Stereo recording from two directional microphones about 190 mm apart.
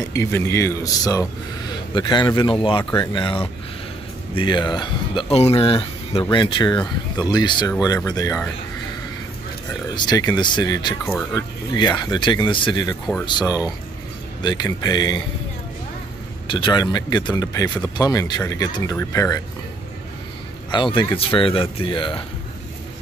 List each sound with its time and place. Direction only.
0.1 s a man's voice: 15° left (ahead or behind)
9.9 s speech: 20° left (ahead or behind)
16.4 s speech: 25° left (ahead or behind)
20.7 s speech: 25° left (ahead or behind)